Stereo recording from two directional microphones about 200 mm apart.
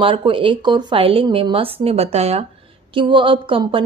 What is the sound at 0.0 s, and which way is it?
A woman's voice, 25° right (ahead or behind).